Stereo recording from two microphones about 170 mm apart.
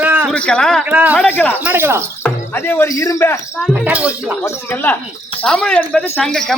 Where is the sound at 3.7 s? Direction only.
10° right (ahead or behind).